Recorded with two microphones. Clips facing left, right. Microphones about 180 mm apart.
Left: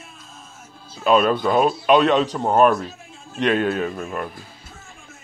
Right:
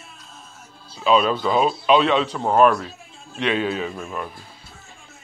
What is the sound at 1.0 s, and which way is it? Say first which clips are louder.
Speech: left 2 dB; 50° left (ahead or behind).